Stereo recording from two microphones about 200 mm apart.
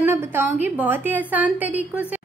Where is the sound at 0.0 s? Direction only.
10° right (ahead or behind).